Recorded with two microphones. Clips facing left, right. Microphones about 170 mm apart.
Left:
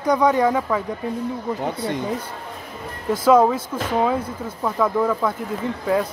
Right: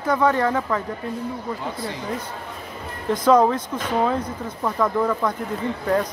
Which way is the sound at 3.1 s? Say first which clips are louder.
Left 1 dB; 5° left (ahead or behind).